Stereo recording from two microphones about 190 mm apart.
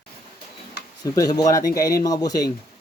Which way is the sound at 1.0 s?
20° left (ahead or behind).